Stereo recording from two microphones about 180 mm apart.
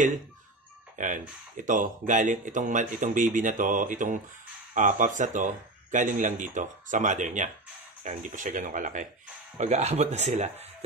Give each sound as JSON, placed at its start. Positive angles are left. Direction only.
{"t": 0.9, "sound": "speech", "side_deg": -45}